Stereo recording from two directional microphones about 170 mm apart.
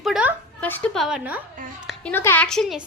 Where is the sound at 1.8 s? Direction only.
10° left (ahead or behind).